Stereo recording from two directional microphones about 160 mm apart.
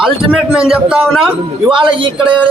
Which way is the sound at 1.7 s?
30° right (ahead or behind).